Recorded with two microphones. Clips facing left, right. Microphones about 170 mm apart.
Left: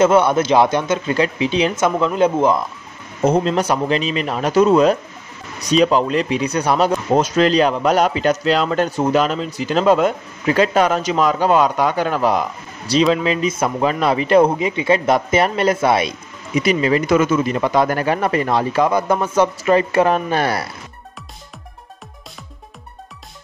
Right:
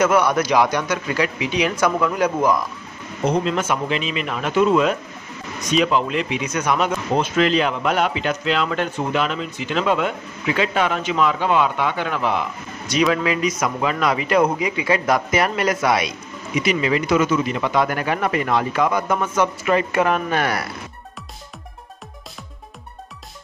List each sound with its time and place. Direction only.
0.0 s speech: 25° left (ahead or behind)
3.3 s speech: 40° left (ahead or behind)
16.5 s speech: 40° left (ahead or behind)